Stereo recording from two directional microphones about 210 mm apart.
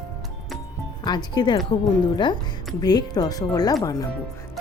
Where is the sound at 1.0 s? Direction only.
20° left (ahead or behind).